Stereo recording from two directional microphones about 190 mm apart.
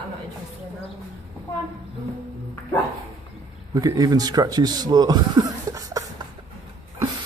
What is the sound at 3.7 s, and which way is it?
Speech, 20° right (ahead or behind).